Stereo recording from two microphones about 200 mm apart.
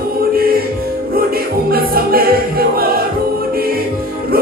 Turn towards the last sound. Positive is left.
turn(degrees=-50)  # may be behind; listen again after turning